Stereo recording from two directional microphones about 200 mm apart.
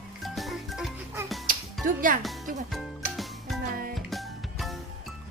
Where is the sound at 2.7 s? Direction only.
Centre (ahead or behind).